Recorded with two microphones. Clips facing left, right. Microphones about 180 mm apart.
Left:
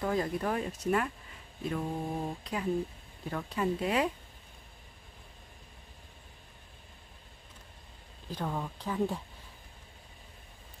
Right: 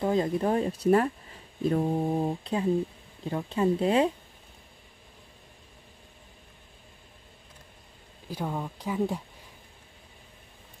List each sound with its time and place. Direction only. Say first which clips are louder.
0.0 s speech: right 5 dB; 25° right (ahead or behind)
1.6 s mantra: right 8 dB; 35° right (ahead or behind)
3.3 s speech: right 6 dB; 25° right (ahead or behind)
8.3 s speech: right 3 dB; 10° right (ahead or behind)